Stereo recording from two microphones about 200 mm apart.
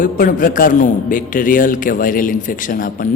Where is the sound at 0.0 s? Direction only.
45° left (ahead or behind).